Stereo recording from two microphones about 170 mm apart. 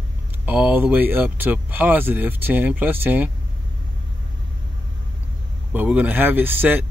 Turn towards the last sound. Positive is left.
turn(degrees=-10)  # may be behind; listen again after turning